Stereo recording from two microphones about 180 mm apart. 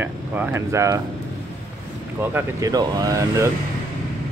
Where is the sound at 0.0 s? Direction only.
10° right (ahead or behind).